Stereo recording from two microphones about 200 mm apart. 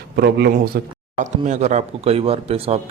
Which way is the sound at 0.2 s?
55° right (ahead or behind).